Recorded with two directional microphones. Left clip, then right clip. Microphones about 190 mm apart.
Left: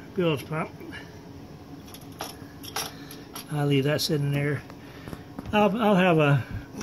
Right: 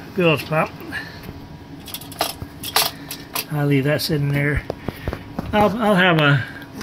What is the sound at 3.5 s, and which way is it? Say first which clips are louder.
Speech: right 5 dB; 25° left (ahead or behind).